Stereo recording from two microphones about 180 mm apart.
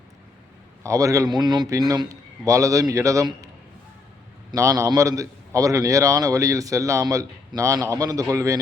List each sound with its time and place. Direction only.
0.8 s a man's voice: 20° right (ahead or behind)
4.5 s a man's voice: 15° right (ahead or behind)